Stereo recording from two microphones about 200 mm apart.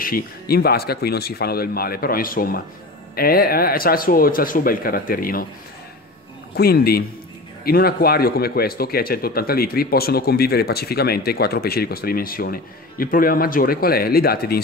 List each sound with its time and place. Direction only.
0.0 s speech: 50° left (ahead or behind)
6.5 s speech: 50° left (ahead or behind)